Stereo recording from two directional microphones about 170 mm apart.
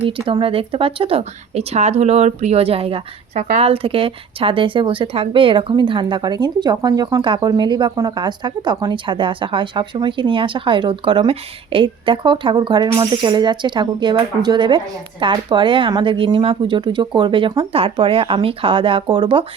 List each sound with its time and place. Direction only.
0.3 s speech: 30° right (ahead or behind)